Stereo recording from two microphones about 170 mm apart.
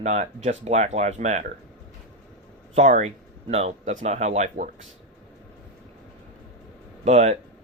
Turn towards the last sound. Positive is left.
turn(degrees=-40)  # may be behind; listen again after turning